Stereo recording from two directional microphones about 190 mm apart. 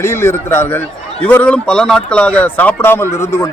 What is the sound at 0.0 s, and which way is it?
Speech, 15° left (ahead or behind).